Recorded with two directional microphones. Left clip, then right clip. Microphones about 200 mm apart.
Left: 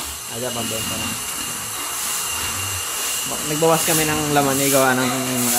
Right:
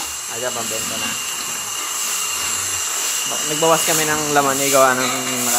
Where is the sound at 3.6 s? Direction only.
Centre (ahead or behind).